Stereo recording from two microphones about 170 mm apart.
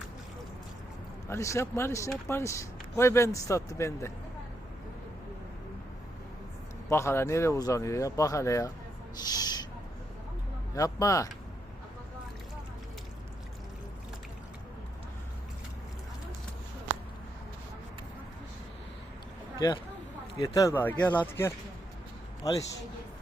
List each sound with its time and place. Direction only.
1.3 s speech: 15° left (ahead or behind)
6.8 s speech: 15° left (ahead or behind)
9.2 s owl: 25° left (ahead or behind)
10.8 s speech: 20° left (ahead or behind)
19.5 s speech: 25° left (ahead or behind)